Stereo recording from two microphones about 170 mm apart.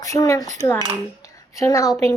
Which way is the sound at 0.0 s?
20° left (ahead or behind).